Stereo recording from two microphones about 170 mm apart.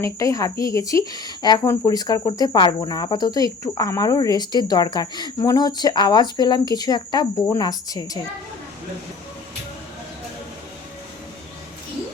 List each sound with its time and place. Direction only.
0.0 s speech: 20° left (ahead or behind)